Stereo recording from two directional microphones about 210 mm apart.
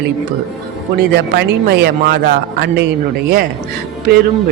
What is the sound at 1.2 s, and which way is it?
Speech, 50° right (ahead or behind).